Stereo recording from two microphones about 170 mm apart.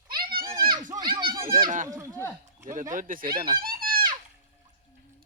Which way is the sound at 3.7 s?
60° right (ahead or behind).